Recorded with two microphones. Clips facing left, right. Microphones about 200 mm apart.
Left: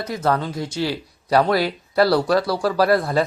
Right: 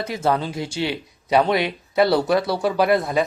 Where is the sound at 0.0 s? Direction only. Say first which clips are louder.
Even; 25° right (ahead or behind).